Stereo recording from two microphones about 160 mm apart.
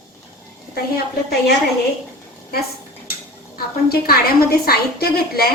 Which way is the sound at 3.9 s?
75° left (ahead or behind).